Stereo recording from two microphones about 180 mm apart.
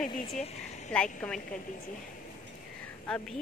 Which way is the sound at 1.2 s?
5° left (ahead or behind).